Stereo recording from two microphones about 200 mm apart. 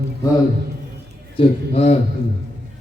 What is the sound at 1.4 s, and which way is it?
Speech, 30° left (ahead or behind).